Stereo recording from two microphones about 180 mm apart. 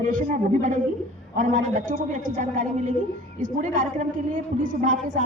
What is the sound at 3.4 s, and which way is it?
A woman's voice, 45° right (ahead or behind).